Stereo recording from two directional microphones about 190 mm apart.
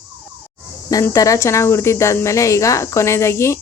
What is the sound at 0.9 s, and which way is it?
Speech, 15° left (ahead or behind).